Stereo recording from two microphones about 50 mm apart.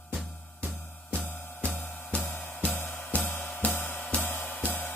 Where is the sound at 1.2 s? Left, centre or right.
Left.